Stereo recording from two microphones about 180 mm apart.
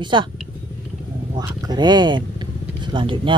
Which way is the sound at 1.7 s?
25° right (ahead or behind).